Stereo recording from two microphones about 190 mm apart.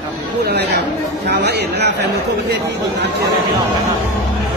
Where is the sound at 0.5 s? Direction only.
60° right (ahead or behind).